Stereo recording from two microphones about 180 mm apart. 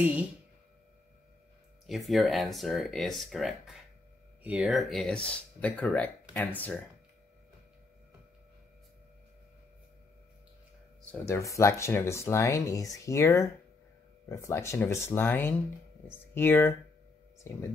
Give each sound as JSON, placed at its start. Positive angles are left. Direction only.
{"t": 1.9, "sound": "speech", "side_deg": 0}
{"t": 11.0, "sound": "speech", "side_deg": 10}